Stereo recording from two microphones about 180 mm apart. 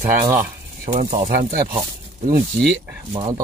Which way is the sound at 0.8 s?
50° right (ahead or behind).